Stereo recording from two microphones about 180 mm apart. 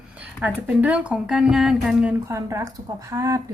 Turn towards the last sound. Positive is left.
turn(degrees=-15)  # may be behind; listen again after turning